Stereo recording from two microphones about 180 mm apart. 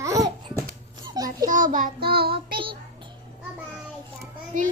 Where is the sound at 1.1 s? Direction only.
20° right (ahead or behind).